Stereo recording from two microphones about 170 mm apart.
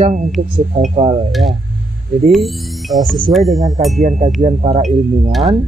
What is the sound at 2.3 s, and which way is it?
Speech, centre (ahead or behind).